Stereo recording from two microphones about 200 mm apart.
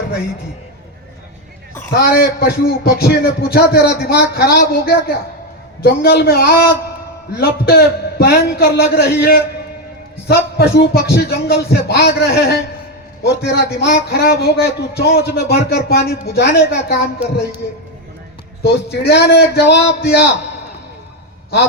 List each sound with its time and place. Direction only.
2.0 s a man's voice: 50° left (ahead or behind)
10.2 s a man's voice: 50° left (ahead or behind)
18.6 s a man's voice: 55° left (ahead or behind)